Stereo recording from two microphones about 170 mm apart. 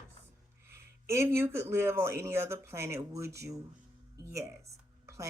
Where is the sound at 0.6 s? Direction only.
15° right (ahead or behind).